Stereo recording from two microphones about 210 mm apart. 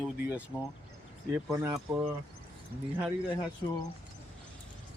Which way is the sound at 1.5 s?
15° right (ahead or behind).